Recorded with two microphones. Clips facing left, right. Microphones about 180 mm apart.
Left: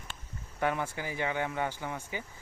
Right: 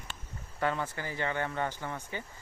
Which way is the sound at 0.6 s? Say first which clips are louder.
Left 1 dB; 15° left (ahead or behind).